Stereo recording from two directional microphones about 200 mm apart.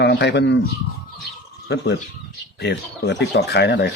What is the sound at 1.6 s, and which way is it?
Speech, 55° left (ahead or behind).